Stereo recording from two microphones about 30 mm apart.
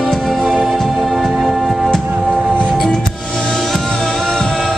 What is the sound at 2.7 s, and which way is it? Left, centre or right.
Music, centre.